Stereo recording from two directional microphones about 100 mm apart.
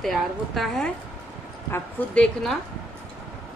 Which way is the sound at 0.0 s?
Centre (ahead or behind).